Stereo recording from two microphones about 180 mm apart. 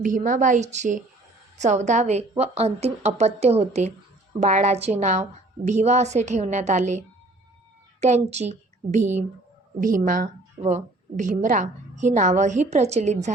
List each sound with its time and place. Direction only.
0.0 s a woman's voice: 45° right (ahead or behind)
8.0 s a woman's voice: 40° right (ahead or behind)